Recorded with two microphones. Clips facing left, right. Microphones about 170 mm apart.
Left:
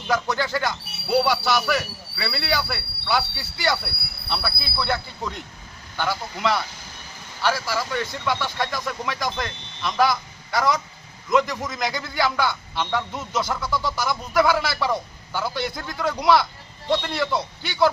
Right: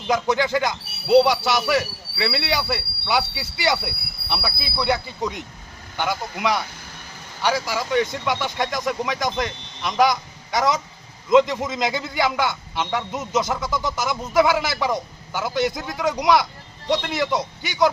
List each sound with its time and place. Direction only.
0.1 s speech: 20° right (ahead or behind)